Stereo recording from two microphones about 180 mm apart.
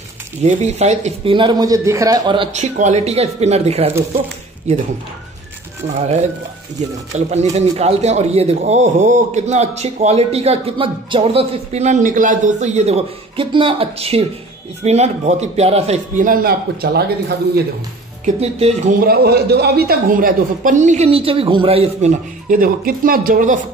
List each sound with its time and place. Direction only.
0.4 s speech: 40° right (ahead or behind)
2.6 s a man's voice: 40° right (ahead or behind)
7.1 s a man's voice: 40° right (ahead or behind); by 17.0 s 60° right (ahead or behind)
18.2 s a man's voice: 35° right (ahead or behind)
18.9 s speech: 60° right (ahead or behind); by 22.1 s 35° right (ahead or behind)
22.5 s speech: 50° right (ahead or behind)